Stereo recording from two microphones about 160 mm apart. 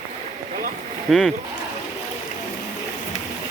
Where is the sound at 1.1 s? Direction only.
Centre (ahead or behind).